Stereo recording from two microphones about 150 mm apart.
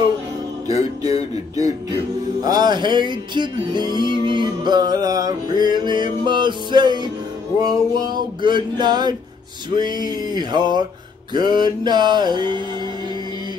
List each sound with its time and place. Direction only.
0.7 s music: 25° right (ahead or behind)
2.4 s music: 25° right (ahead or behind)
9.7 s mantra: 30° right (ahead or behind)